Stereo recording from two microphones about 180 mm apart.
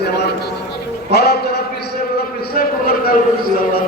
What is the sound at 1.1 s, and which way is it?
Speech, 65° left (ahead or behind).